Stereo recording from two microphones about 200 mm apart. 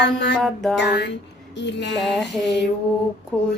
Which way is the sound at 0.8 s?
60° left (ahead or behind).